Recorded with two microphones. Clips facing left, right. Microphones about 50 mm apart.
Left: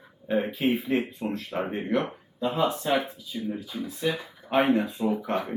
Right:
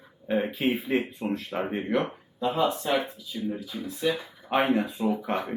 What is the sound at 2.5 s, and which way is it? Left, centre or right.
Speech, left.